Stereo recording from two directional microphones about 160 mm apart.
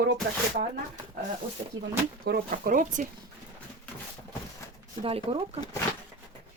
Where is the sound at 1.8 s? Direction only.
75° right (ahead or behind); by 3.1 s 55° right (ahead or behind).